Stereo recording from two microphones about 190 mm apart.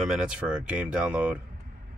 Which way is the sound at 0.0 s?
5° right (ahead or behind).